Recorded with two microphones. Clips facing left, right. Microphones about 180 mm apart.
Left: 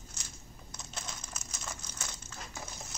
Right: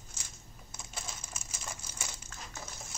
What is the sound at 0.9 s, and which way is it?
Crumpling, 5° right (ahead or behind).